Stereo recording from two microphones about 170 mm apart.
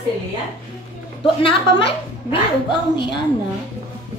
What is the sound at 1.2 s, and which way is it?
Speech, 30° left (ahead or behind).